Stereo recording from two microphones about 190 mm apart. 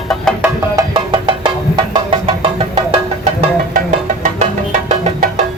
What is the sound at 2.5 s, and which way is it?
Music, 30° right (ahead or behind).